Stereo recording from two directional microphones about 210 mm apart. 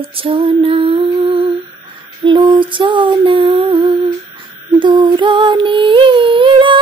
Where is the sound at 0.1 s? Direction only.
25° right (ahead or behind).